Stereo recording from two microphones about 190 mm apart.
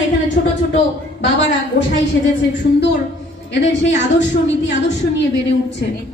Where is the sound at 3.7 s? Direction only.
70° left (ahead or behind).